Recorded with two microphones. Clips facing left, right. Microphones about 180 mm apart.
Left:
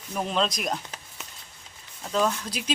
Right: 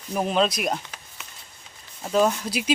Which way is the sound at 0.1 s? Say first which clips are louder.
Right 4 dB; 10° right (ahead or behind).